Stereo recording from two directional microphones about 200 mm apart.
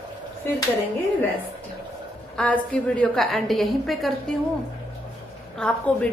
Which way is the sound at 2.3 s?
5° left (ahead or behind).